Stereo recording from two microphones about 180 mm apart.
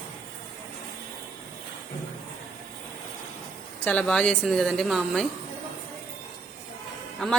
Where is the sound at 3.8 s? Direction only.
5° left (ahead or behind).